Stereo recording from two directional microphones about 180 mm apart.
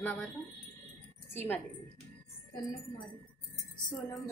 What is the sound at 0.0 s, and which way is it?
Speech, 10° left (ahead or behind).